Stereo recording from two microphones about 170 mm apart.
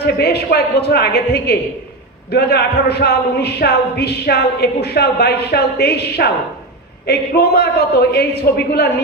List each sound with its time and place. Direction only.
0.0 s speech: 70° left (ahead or behind)